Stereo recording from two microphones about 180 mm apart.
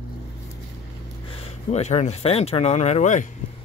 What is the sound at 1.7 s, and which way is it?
Speech, 40° left (ahead or behind).